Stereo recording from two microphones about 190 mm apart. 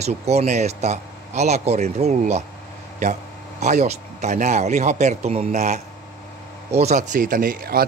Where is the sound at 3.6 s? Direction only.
35° right (ahead or behind).